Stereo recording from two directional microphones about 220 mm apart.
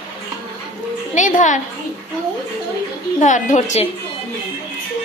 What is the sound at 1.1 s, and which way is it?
Speech, 35° left (ahead or behind).